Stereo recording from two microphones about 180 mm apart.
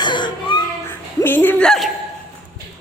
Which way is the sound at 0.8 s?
10° left (ahead or behind).